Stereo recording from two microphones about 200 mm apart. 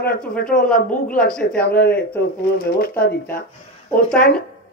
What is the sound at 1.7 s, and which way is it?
Speech, 50° left (ahead or behind).